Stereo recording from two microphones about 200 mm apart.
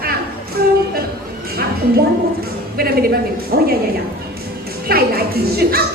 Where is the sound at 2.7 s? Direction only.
50° right (ahead or behind).